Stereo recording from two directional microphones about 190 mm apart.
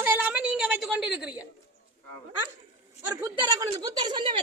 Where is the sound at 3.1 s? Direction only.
20° right (ahead or behind).